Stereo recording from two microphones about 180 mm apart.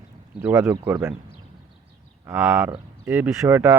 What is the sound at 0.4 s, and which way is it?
Speech, 15° right (ahead or behind).